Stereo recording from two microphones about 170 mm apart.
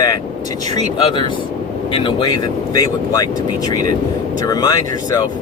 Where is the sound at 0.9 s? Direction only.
25° left (ahead or behind).